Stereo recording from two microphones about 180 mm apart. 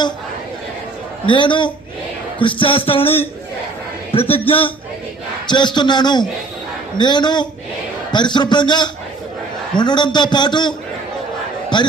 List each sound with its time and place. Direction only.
1.3 s a man's voice: 25° left (ahead or behind)